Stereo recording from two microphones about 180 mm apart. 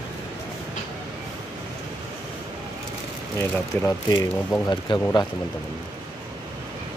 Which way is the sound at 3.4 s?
15° left (ahead or behind).